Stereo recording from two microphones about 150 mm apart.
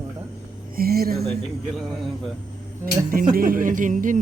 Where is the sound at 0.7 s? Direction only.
85° right.